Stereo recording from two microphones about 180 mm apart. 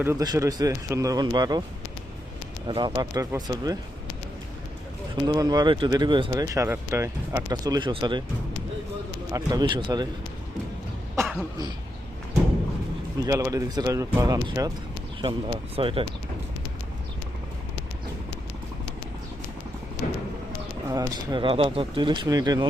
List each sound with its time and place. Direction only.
0.0 s speech: 15° right (ahead or behind)
2.6 s speech: 25° right (ahead or behind)
5.2 s speech: 20° right (ahead or behind)
9.3 s speech: 20° right (ahead or behind)
13.2 s speech: 20° right (ahead or behind)
20.0 s a sound: 45° left (ahead or behind)
20.9 s speech: 20° right (ahead or behind)